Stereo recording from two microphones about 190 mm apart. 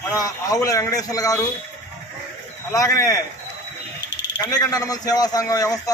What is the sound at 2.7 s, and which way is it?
Speech, 20° left (ahead or behind).